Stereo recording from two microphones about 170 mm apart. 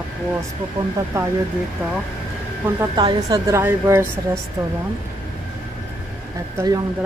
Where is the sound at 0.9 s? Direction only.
15° right (ahead or behind).